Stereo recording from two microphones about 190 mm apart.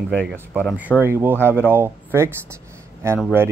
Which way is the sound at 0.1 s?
5° left (ahead or behind).